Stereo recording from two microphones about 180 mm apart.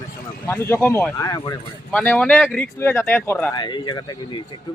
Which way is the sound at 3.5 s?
25° left (ahead or behind).